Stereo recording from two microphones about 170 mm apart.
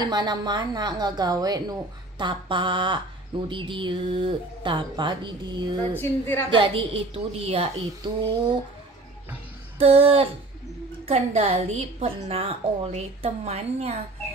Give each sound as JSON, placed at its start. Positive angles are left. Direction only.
{"t": 0.0, "sound": "a woman's voice", "side_deg": -25}
{"t": 5.8, "sound": "a woman's voice", "side_deg": 10}
{"t": 6.5, "sound": "a woman's voice", "side_deg": -30}
{"t": 9.8, "sound": "a woman's voice", "side_deg": -35}